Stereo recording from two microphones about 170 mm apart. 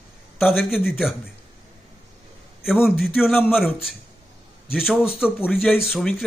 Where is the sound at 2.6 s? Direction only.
5° right (ahead or behind).